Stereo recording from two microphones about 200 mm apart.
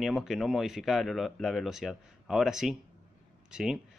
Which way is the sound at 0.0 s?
Centre (ahead or behind).